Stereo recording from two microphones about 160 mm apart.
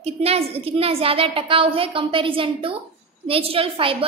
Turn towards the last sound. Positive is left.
turn(degrees=-35)  # may be behind; listen again after turning